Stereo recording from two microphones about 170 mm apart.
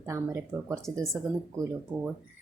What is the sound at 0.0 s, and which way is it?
Speech, 15° right (ahead or behind).